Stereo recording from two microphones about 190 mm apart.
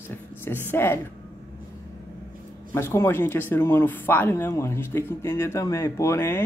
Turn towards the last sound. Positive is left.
turn(degrees=15)  # may be behind; listen again after turning